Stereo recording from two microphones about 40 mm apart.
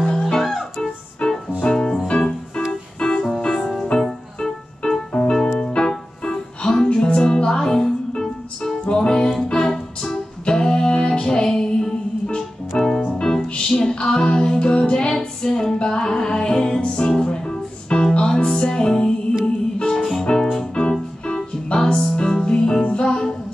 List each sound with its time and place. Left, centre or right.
0.0 s music: centre
0.4 s keyboard: centre
1.6 s music: centre
2.0 s keyboard: left
4.0 s music: centre
12.4 s keyboard: centre
13.7 s music: centre
20.8 s keyboard: left
21.7 s music: centre